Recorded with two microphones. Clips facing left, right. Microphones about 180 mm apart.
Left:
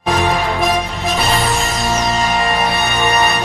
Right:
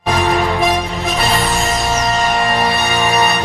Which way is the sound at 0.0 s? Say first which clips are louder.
Right 1 dB; centre (ahead or behind).